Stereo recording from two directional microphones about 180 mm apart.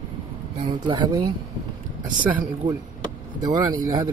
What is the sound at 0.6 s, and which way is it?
Speech, 25° right (ahead or behind).